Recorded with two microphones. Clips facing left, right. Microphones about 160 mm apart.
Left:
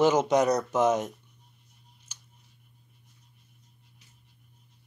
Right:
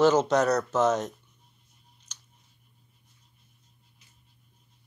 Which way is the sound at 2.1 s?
10° left (ahead or behind).